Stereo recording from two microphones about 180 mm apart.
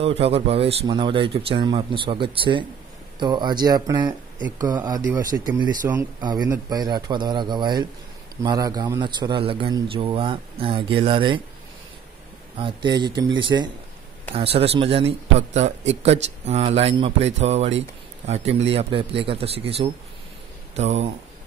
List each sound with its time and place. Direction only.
0.2 s a man's voice: 35° right (ahead or behind)
12.5 s a man's voice: 25° right (ahead or behind)